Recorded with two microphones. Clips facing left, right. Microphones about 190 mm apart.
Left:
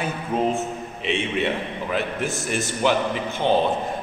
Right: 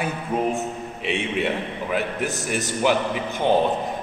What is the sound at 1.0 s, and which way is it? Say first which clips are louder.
Speech: even; 10° right (ahead or behind).